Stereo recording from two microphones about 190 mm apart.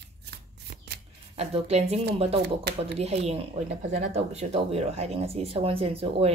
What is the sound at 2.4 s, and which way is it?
Speech, 60° right (ahead or behind).